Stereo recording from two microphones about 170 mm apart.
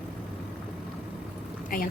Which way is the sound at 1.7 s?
55° left (ahead or behind).